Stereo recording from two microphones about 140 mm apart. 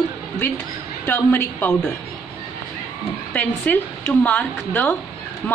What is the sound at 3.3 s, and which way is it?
A woman's voice, 10° left (ahead or behind).